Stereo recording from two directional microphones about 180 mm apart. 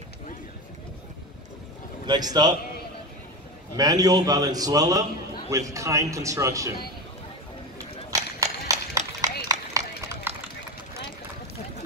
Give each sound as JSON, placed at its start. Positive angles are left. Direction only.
{"t": 2.0, "sound": "a man's voice", "side_deg": -25}
{"t": 3.7, "sound": "a man's voice", "side_deg": -20}
{"t": 8.1, "sound": "run", "side_deg": -20}